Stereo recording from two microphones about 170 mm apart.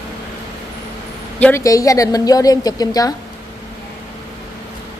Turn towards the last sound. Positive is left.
turn(degrees=20)  # may be behind; listen again after turning